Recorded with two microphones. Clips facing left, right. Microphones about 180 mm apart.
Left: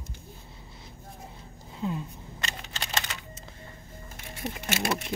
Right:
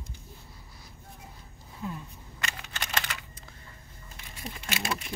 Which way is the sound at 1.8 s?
25° left (ahead or behind).